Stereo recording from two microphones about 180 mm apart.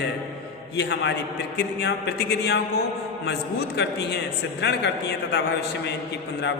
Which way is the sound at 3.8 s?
70° left (ahead or behind).